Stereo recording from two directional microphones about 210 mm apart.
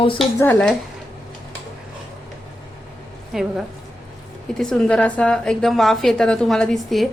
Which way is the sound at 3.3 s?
Centre (ahead or behind).